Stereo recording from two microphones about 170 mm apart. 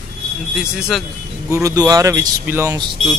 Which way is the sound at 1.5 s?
20° right (ahead or behind).